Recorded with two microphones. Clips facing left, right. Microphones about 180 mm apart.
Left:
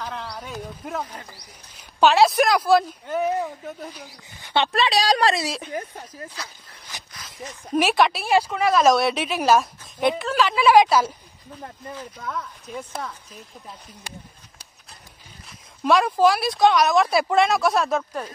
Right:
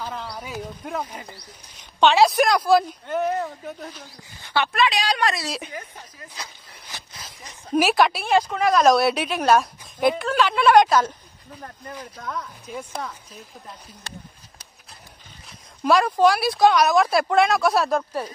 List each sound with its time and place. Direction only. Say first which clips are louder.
0.0 s speech: right 1 dB; 5° right (ahead or behind); by 4.6 s 15° left (ahead or behind)
4.7 s a woman's voice: left 2 dB; 35° left (ahead or behind)
7.2 s speech: left 1 dB; centre (ahead or behind)
12.2 s speech: right 1 dB; centre (ahead or behind)
14.0 s speech: even; 15° left (ahead or behind)
15.4 s speech: right 1 dB; centre (ahead or behind)